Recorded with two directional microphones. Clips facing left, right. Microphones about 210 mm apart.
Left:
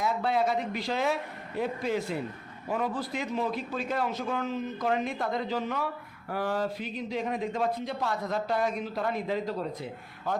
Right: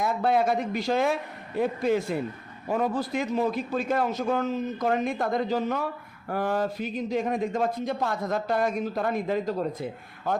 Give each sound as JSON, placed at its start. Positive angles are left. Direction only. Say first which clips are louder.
{"t": 0.0, "sound": "speech", "louder": "right 3 dB", "side_deg": -50}
{"t": 2.1, "sound": "speech", "louder": "right 4 dB", "side_deg": -50}